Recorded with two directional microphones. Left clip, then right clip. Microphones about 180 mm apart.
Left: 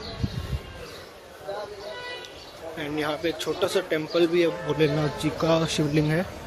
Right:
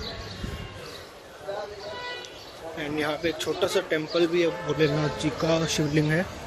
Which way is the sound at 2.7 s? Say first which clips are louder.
Even; 10° left (ahead or behind).